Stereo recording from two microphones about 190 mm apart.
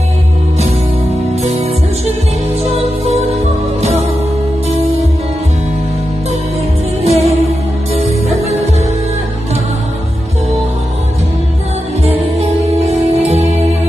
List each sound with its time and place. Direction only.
2.6 s music: 35° right (ahead or behind)
7.0 s music: 35° right (ahead or behind)
12.0 s music: 35° right (ahead or behind)